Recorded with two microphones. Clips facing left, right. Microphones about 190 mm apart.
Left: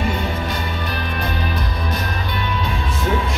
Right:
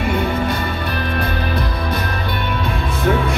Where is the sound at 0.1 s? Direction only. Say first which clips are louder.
Right 5 dB; 60° right (ahead or behind).